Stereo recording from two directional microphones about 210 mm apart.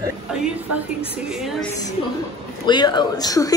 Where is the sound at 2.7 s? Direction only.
20° left (ahead or behind).